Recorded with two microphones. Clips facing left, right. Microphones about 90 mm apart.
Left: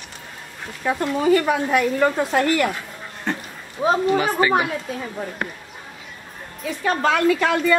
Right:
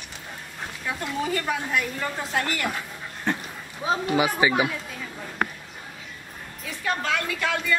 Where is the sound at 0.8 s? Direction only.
65° left (ahead or behind).